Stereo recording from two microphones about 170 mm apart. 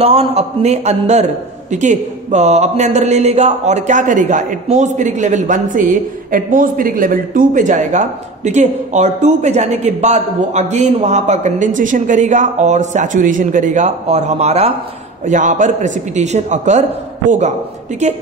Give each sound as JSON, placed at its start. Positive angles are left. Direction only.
{"t": 0.0, "sound": "a man's voice", "side_deg": -35}
{"t": 18.0, "sound": "a man's voice", "side_deg": -40}